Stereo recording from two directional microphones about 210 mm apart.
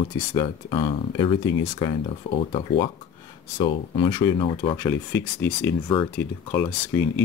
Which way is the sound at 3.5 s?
25° left (ahead or behind).